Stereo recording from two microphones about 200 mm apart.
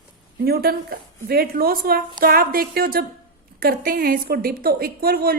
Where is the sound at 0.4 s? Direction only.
50° right (ahead or behind).